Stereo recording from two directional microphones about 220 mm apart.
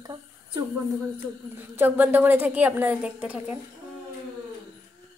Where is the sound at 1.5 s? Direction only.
10° right (ahead or behind).